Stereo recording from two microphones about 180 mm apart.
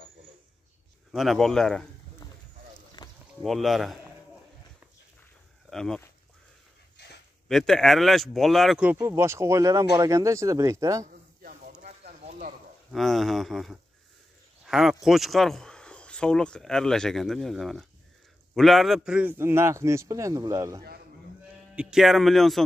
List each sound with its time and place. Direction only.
1.1 s speech: centre (ahead or behind)
3.0 s a sound: 20° left (ahead or behind)
3.4 s speech: centre (ahead or behind)
5.7 s speech: 5° left (ahead or behind)
7.0 s a sound: 65° left (ahead or behind)
7.4 s speech: centre (ahead or behind)
8.9 s a man's voice: 15° right (ahead or behind)
12.0 s a sound: 45° right (ahead or behind)
12.9 s a man's voice: centre (ahead or behind); by 20.8 s 20° right (ahead or behind)
21.7 s speech: centre (ahead or behind)